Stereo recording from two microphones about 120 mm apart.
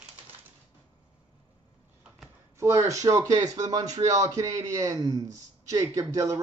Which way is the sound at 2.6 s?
25° right (ahead or behind).